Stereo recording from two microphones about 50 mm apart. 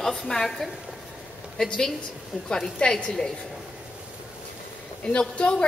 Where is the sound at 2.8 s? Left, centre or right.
Left.